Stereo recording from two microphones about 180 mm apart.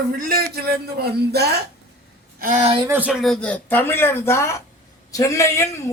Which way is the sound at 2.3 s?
50° right (ahead or behind).